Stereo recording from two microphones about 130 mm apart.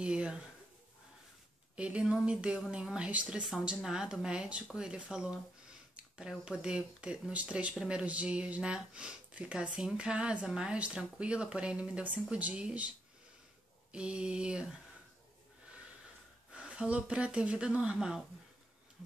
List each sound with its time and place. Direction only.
0.0 s speech: 10° right (ahead or behind)
1.8 s speech: 10° right (ahead or behind)
13.9 s speech: 5° right (ahead or behind)
16.5 s speech: 10° right (ahead or behind)